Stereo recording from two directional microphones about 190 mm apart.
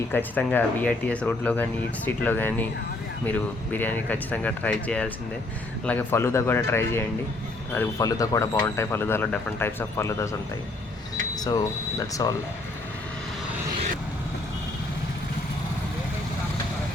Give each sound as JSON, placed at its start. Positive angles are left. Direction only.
{"t": 0.1, "sound": "speech", "side_deg": 10}
{"t": 11.3, "sound": "speech", "side_deg": 20}